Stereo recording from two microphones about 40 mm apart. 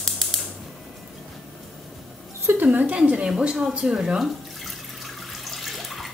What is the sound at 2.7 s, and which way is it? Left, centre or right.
Speech, right.